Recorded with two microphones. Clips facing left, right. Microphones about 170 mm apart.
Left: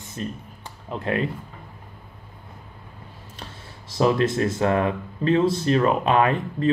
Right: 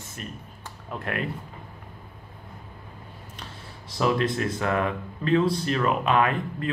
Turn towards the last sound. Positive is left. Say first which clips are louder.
# left 3 dB
turn(degrees=30)  # may be behind; listen again after turning